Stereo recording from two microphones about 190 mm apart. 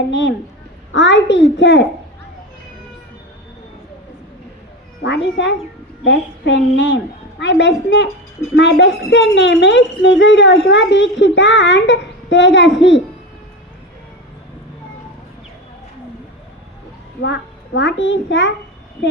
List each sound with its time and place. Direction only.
0.1 s speech: 70° left (ahead or behind)
5.0 s speech: 65° left (ahead or behind)
17.2 s a child's voice: 65° left (ahead or behind)